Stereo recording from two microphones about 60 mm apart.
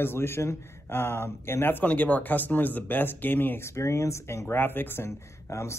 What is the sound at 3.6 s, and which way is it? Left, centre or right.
Speech, left.